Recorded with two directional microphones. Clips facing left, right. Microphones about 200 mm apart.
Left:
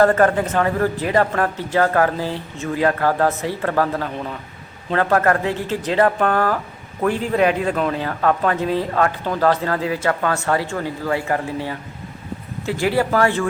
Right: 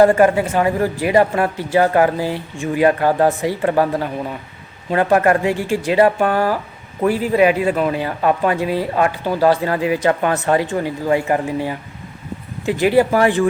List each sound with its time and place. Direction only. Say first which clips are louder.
0.0 s speech: right 3 dB; 10° right (ahead or behind)